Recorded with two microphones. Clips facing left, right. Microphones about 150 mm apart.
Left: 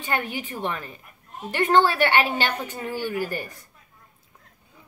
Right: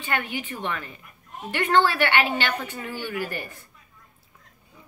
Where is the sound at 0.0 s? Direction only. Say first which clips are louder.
Left 1 dB; 40° left (ahead or behind).